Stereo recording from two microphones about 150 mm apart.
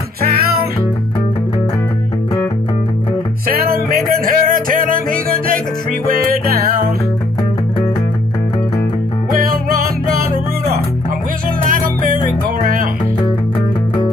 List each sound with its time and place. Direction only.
0.2 s music: 90° right
3.9 s music: 70° right (ahead or behind)
6.5 s music: 75° right (ahead or behind)
9.3 s music: 75° right (ahead or behind)